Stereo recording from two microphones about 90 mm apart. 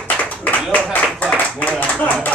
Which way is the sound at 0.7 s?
15° left (ahead or behind).